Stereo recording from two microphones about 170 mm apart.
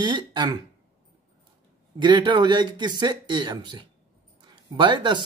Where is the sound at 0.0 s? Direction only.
25° right (ahead or behind).